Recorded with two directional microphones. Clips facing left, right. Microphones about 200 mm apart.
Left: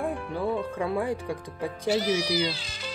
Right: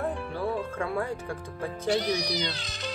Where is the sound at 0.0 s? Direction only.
15° left (ahead or behind).